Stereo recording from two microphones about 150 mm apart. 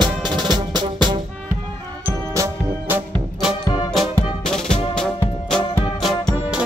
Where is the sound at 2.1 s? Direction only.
15° right (ahead or behind).